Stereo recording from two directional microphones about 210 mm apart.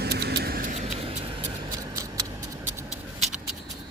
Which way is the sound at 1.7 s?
15° right (ahead or behind).